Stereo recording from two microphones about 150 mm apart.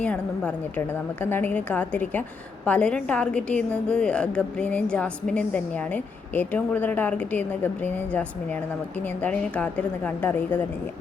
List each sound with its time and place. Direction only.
0.0 s a woman's voice: 10° left (ahead or behind)